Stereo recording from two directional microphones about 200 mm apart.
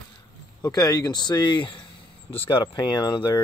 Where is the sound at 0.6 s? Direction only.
20° left (ahead or behind).